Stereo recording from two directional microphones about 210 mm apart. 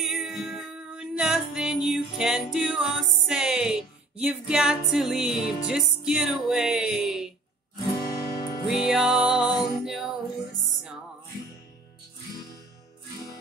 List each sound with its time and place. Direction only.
0.1 s music: centre (ahead or behind)
7.8 s guitar: 20° left (ahead or behind)
8.1 s music: 45° left (ahead or behind)
8.6 s music: centre (ahead or behind)